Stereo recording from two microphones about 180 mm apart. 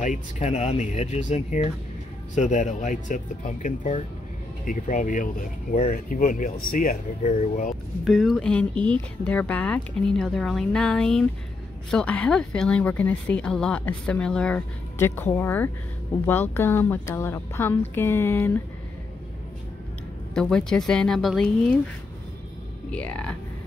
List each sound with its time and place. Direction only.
0.0 s speech: 40° left (ahead or behind)
8.0 s speech: centre (ahead or behind)
20.3 s speech: 5° left (ahead or behind)
22.8 s speech: 5° left (ahead or behind)